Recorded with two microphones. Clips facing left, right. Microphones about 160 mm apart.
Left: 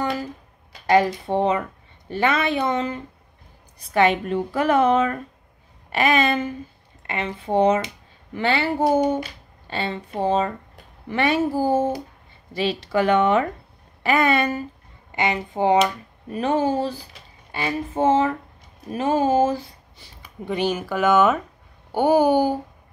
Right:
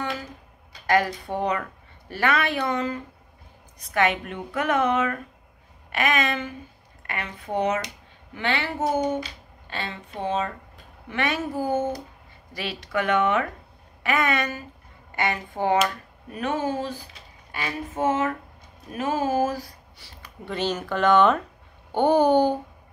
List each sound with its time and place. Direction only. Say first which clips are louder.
0.8 s a woman's voice: left 4 dB; 25° left (ahead or behind)
15.0 s speech: left 3 dB; 20° left (ahead or behind)
16.3 s a woman's voice: left 5 dB; 30° left (ahead or behind)
20.2 s speech: left 4 dB; 10° left (ahead or behind)